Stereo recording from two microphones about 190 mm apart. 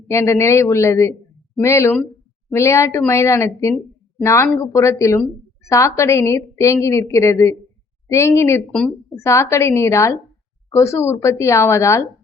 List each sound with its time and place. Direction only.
0.1 s a woman's voice: 15° left (ahead or behind)